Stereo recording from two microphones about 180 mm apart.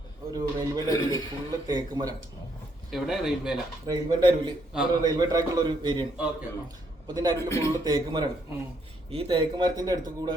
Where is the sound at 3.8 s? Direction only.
20° right (ahead or behind).